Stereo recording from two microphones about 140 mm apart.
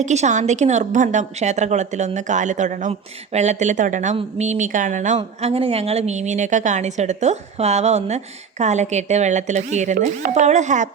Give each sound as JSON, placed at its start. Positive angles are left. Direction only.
{"t": 0.0, "sound": "a woman's voice", "side_deg": -55}